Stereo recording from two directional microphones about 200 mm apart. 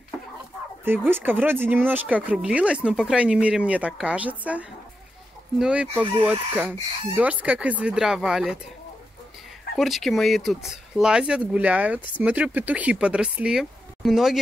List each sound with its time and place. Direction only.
0.8 s speech: 10° right (ahead or behind)
9.8 s speech: centre (ahead or behind)